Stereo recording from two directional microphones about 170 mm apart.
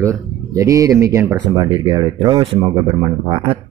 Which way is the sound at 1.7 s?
30° right (ahead or behind).